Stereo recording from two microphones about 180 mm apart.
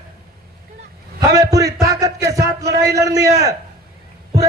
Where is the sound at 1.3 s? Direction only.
20° right (ahead or behind).